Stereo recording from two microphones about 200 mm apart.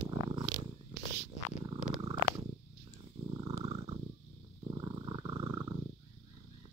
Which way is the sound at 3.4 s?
20° right (ahead or behind).